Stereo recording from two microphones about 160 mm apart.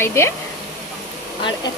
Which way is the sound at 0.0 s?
15° left (ahead or behind).